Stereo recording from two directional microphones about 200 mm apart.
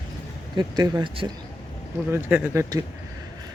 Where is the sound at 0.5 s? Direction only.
20° right (ahead or behind).